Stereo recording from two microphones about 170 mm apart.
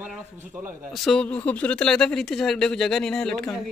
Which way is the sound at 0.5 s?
15° right (ahead or behind).